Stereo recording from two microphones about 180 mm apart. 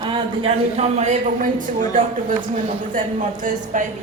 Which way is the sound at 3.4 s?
45° right (ahead or behind).